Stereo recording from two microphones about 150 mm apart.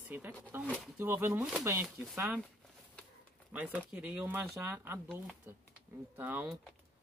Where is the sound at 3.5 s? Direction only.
10° right (ahead or behind).